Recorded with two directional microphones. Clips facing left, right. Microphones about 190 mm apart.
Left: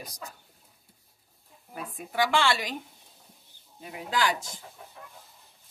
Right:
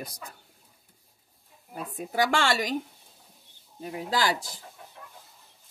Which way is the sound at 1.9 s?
40° right (ahead or behind).